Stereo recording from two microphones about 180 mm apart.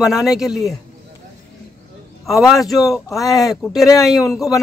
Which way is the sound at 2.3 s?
Centre (ahead or behind).